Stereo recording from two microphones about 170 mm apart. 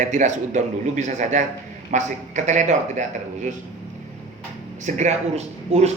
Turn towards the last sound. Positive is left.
turn(degrees=-40)  # may be behind; listen again after turning